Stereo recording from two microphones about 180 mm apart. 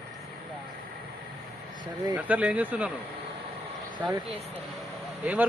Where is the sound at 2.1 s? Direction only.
10° right (ahead or behind).